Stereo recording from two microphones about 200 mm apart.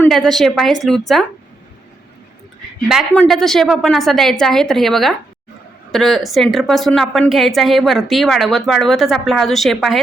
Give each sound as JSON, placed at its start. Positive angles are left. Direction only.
{"t": 0.0, "sound": "a woman's voice", "side_deg": 0}
{"t": 2.9, "sound": "a woman's voice", "side_deg": 0}